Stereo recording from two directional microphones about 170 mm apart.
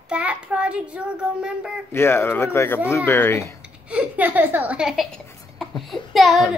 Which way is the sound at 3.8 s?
10° right (ahead or behind).